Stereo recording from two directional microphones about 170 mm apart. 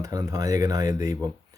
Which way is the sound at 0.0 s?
20° right (ahead or behind).